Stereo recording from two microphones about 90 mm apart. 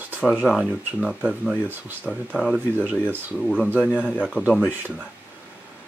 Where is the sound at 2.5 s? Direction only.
15° right (ahead or behind).